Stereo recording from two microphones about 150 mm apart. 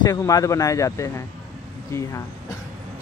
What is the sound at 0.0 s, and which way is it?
Speech, 25° left (ahead or behind).